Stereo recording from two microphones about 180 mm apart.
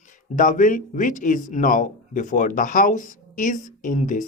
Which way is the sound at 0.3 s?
45° left (ahead or behind).